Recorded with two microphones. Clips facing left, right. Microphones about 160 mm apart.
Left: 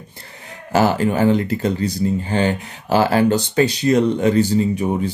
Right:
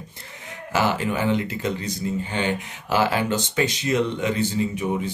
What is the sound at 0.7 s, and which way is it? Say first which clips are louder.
Speech: left 6 dB; 40° left (ahead or behind).